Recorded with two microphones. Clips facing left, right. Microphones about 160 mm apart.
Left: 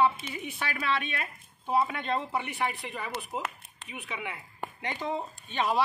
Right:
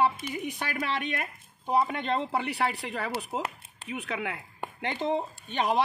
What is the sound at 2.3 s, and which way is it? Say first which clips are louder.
Speech: right 3 dB; 75° right (ahead or behind).